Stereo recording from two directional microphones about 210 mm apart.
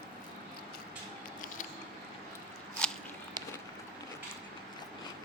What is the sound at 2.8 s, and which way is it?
Biting, 5° left (ahead or behind).